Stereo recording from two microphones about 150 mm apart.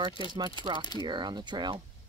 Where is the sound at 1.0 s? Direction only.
30° right (ahead or behind).